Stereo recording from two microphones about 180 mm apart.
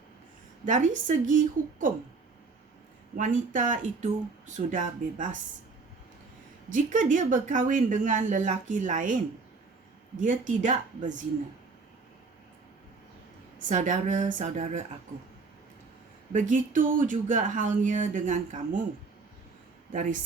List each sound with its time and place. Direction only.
0.6 s speech: 45° right (ahead or behind)
3.2 s speech: 45° right (ahead or behind)
6.7 s speech: 45° right (ahead or behind)
10.2 s speech: 45° right (ahead or behind)
13.6 s speech: 45° right (ahead or behind)
16.3 s speech: 45° right (ahead or behind)
19.9 s speech: 45° right (ahead or behind)